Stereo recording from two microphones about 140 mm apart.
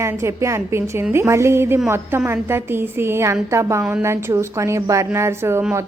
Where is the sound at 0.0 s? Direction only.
20° right (ahead or behind).